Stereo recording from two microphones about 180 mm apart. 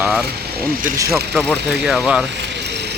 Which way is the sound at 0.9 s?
15° right (ahead or behind).